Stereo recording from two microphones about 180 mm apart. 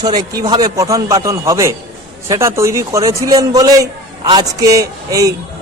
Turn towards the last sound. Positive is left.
turn(degrees=-20)  # may be behind; listen again after turning